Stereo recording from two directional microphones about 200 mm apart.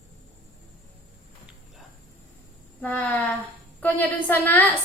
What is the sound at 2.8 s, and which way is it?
A woman's voice, 10° left (ahead or behind).